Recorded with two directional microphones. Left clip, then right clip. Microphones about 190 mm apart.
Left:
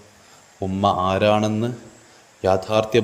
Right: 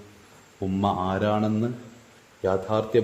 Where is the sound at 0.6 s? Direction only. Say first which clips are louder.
Left 6 dB; 10° left (ahead or behind).